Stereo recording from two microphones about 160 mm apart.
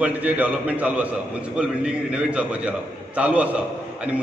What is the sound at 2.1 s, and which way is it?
A man's voice, 5° right (ahead or behind).